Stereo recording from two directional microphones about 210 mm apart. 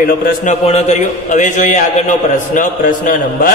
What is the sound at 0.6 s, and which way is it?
A man's voice, 30° left (ahead or behind).